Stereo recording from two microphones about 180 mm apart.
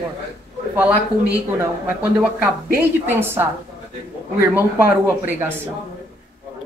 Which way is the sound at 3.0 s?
10° right (ahead or behind).